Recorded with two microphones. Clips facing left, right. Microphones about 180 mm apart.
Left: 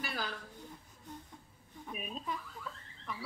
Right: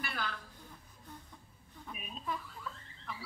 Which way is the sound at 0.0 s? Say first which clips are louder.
Left 1 dB; 35° left (ahead or behind).